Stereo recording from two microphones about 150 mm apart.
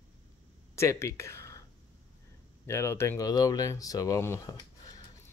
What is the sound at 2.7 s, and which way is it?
Speech, 15° left (ahead or behind).